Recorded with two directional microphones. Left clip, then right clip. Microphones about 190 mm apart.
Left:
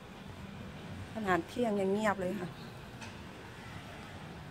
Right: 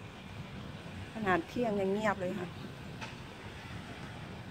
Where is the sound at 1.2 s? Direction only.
15° left (ahead or behind).